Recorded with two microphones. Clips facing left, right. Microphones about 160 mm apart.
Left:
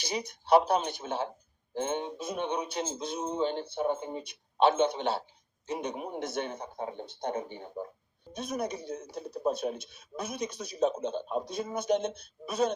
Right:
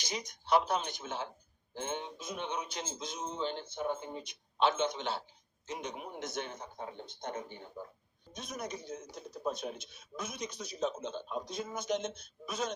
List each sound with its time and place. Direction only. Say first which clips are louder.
0.0 s speech: left 6 dB; 60° left (ahead or behind)